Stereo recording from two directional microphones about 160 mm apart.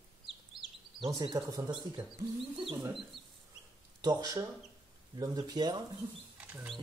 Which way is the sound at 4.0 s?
25° right (ahead or behind).